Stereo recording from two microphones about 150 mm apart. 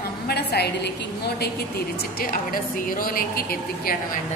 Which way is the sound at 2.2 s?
70° left (ahead or behind).